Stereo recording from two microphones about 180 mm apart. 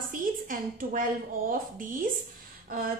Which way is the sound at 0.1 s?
50° right (ahead or behind).